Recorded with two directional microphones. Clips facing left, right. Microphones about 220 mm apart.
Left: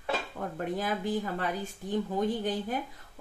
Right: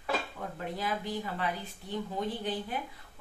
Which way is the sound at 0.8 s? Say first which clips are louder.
Left 3 dB; 50° left (ahead or behind).